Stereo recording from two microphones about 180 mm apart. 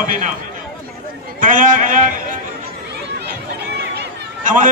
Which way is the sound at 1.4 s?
50° right (ahead or behind).